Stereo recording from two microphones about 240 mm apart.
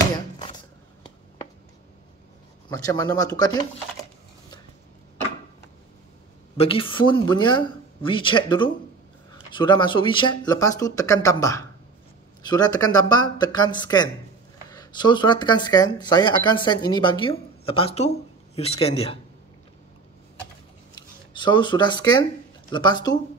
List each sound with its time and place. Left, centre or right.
0.1 s a sound: centre
2.7 s speech: centre
6.5 s speech: left
20.9 s speech: centre